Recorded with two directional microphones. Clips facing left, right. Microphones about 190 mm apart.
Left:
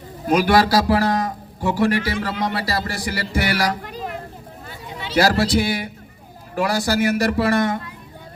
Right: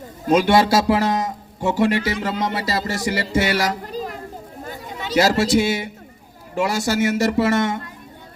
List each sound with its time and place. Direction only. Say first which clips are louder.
0.3 s a man's voice: right 1 dB; 25° right (ahead or behind)
3.8 s children playing: right 3 dB; 35° right (ahead or behind)
4.6 s a sound: right 2 dB; 45° right (ahead or behind)
5.1 s a man's voice: right 1 dB; 25° right (ahead or behind)